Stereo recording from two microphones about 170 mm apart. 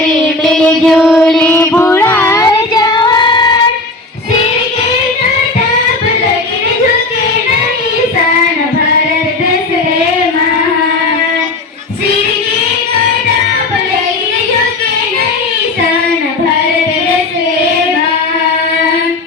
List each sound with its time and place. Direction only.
0.4 s music: centre (ahead or behind)
1.5 s child singing: 15° left (ahead or behind)